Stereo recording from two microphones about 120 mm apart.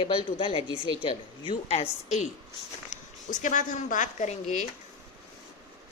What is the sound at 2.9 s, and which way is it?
Speech, 90° left.